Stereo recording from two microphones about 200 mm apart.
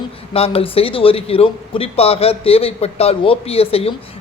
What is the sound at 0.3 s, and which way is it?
A man's voice, 30° left (ahead or behind).